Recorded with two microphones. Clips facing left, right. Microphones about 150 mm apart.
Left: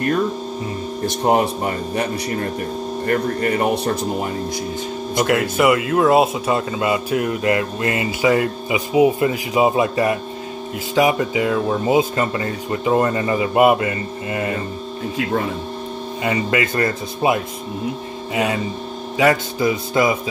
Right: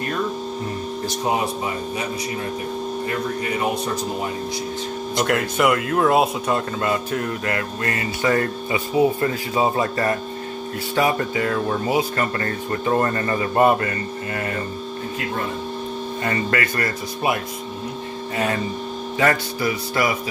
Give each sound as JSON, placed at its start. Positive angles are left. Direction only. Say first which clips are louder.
{"t": 1.2, "sound": "speech", "louder": "left 6 dB", "side_deg": 60}
{"t": 3.1, "sound": "speech", "louder": "left 9 dB", "side_deg": 55}
{"t": 5.1, "sound": "speech", "louder": "left 3 dB", "side_deg": 5}
{"t": 16.3, "sound": "speech", "louder": "left 4 dB", "side_deg": 15}